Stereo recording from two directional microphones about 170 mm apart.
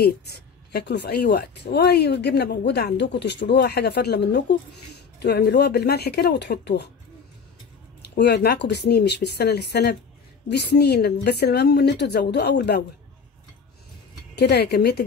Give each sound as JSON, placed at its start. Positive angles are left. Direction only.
{"t": 0.7, "sound": "a woman's voice", "side_deg": 80}
{"t": 8.1, "sound": "a woman's voice", "side_deg": 80}
{"t": 14.3, "sound": "a woman's voice", "side_deg": 75}